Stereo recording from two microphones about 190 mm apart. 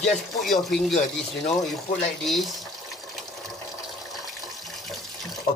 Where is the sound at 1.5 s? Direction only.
Centre (ahead or behind).